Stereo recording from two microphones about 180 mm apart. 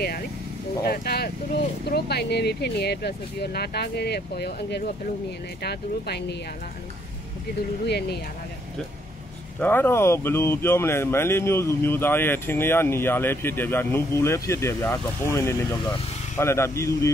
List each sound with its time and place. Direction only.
0.8 s speech: 60° left (ahead or behind)
7.8 s speech: 65° left (ahead or behind)
9.6 s speech: 10° left (ahead or behind)